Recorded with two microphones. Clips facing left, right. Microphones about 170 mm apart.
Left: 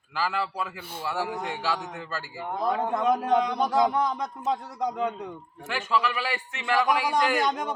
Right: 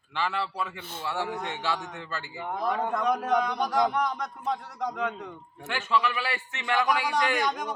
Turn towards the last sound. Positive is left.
turn(degrees=25)  # may be behind; listen again after turning